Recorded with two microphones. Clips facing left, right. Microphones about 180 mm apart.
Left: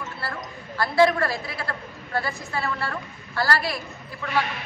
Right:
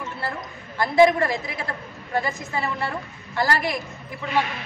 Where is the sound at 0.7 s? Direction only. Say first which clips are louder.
Right 3 dB; 15° right (ahead or behind).